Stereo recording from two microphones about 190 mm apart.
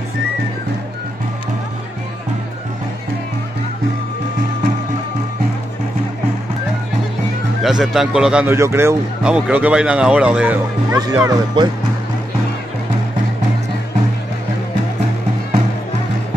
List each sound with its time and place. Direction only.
7.6 s a man's voice: centre (ahead or behind)
11.0 s speech: 20° right (ahead or behind)